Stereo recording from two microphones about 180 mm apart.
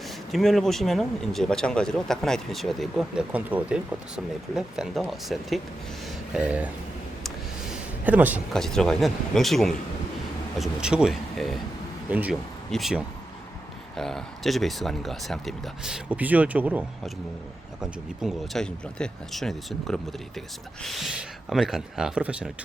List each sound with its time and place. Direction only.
0.3 s speech: centre (ahead or behind)
8.0 s speech: 10° right (ahead or behind)
8.5 s speech: 5° left (ahead or behind)